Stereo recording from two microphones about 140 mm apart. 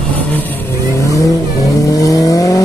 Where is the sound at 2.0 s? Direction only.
25° left (ahead or behind).